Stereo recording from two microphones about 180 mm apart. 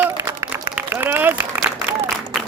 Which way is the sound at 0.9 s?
10° right (ahead or behind).